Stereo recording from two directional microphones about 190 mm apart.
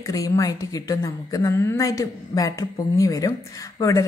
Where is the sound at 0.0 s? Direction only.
20° left (ahead or behind).